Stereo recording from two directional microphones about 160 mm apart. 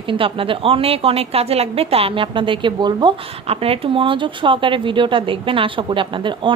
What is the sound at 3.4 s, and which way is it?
A woman's voice, 40° right (ahead or behind).